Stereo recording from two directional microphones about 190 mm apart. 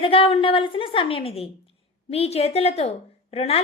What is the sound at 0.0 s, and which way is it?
A woman's voice, 30° left (ahead or behind).